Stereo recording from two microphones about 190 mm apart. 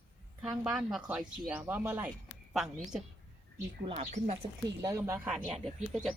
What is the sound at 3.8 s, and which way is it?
Speech, 35° right (ahead or behind).